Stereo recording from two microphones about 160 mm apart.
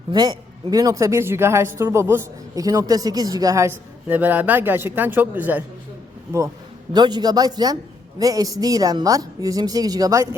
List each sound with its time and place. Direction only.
0.1 s a woman's voice: 25° right (ahead or behind)
6.9 s a woman's voice: 25° right (ahead or behind)